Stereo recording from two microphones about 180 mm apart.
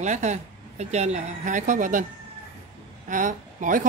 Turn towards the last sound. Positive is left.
turn(degrees=-45)  # may be behind; listen again after turning